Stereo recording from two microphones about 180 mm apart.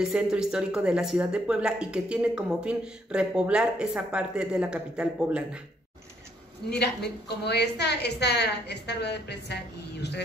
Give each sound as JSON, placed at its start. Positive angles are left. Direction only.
{"t": 0.0, "sound": "speech", "side_deg": -5}
{"t": 6.7, "sound": "a woman's voice", "side_deg": 65}